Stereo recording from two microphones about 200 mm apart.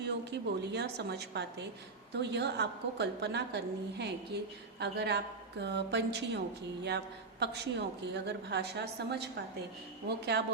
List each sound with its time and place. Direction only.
0.0 s a woman's voice: 60° right (ahead or behind)